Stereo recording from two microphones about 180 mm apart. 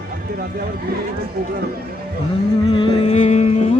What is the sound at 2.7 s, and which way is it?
Music, 30° left (ahead or behind).